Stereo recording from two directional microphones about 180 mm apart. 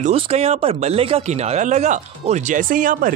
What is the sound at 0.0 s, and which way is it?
Speech, 35° right (ahead or behind).